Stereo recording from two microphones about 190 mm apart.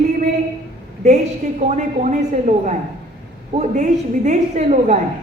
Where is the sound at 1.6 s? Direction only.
35° right (ahead or behind).